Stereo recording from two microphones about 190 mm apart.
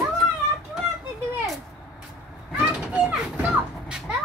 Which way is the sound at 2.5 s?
10° right (ahead or behind).